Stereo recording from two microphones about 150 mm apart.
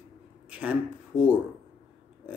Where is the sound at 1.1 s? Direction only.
15° left (ahead or behind).